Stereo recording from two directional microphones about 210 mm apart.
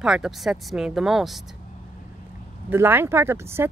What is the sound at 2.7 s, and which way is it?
Speech, 10° right (ahead or behind).